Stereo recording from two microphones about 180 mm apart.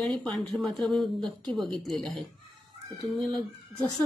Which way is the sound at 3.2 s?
15° left (ahead or behind).